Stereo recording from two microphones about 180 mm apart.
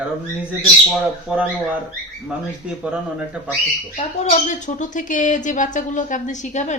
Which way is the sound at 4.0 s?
40° left (ahead or behind).